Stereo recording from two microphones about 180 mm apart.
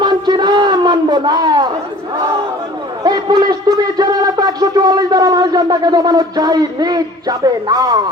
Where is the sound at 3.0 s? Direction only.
20° right (ahead or behind).